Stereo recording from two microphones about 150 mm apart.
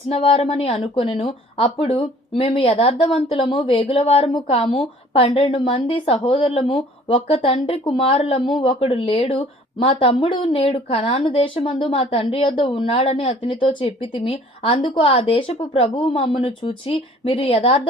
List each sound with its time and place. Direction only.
0.1 s speech: 40° left (ahead or behind)